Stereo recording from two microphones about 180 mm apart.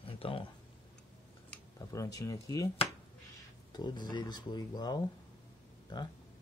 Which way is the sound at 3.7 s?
25° left (ahead or behind).